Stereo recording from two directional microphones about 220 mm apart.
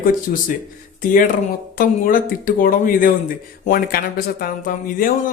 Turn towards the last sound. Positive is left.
turn(degrees=40)  # may be behind; listen again after turning